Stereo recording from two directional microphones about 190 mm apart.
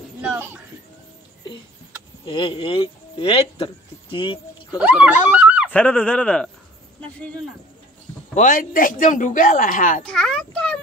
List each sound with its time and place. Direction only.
0.2 s a sound: 10° right (ahead or behind)
2.2 s speech: 25° left (ahead or behind)
4.7 s speech: 5° right (ahead or behind)
5.4 s a sound: 5° right (ahead or behind)
5.7 s speech: 5° left (ahead or behind)
8.4 s speech: 45° left (ahead or behind)
10.0 s a child's voice: 5° left (ahead or behind)